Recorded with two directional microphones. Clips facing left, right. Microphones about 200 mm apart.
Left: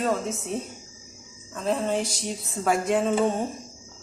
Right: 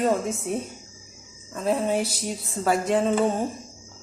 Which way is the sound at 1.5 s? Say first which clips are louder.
Right 2 dB; 5° right (ahead or behind).